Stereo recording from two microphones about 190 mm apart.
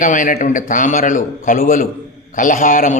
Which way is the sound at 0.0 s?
45° left (ahead or behind).